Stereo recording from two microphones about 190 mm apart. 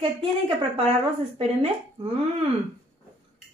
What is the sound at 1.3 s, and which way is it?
Speech, 30° right (ahead or behind).